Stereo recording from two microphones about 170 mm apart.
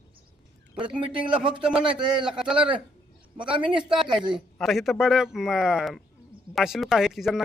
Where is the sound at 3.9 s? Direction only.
5° right (ahead or behind).